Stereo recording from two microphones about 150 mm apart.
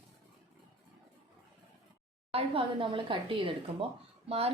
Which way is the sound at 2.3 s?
40° right (ahead or behind).